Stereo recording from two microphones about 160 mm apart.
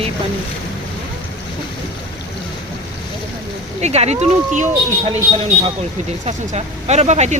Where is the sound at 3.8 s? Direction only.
40° right (ahead or behind).